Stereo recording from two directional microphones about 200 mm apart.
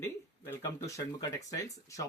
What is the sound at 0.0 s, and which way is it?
Speech, 15° left (ahead or behind).